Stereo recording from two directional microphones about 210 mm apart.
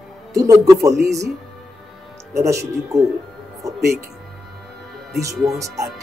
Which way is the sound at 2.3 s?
15° right (ahead or behind).